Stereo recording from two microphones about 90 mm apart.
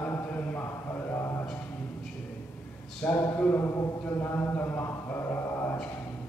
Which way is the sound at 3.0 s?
20° left (ahead or behind).